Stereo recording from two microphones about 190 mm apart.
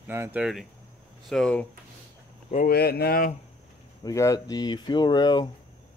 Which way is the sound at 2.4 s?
45° left (ahead or behind).